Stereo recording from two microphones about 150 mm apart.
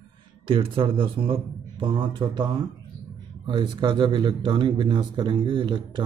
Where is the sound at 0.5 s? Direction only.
35° right (ahead or behind).